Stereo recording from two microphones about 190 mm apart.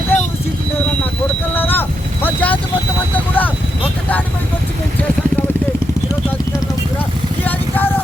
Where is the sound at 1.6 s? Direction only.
10° left (ahead or behind).